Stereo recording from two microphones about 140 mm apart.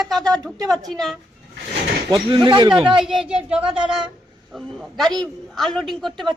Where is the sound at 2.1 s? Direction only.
35° right (ahead or behind).